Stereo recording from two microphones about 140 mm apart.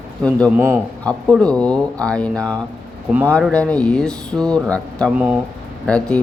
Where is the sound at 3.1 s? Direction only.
10° right (ahead or behind).